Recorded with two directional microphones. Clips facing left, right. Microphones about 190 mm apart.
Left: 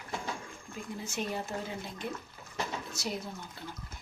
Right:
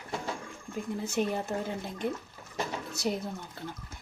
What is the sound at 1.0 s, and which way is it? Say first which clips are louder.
Speech: right 6 dB; 60° right (ahead or behind).